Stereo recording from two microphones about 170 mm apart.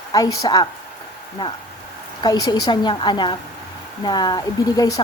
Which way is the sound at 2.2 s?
20° left (ahead or behind).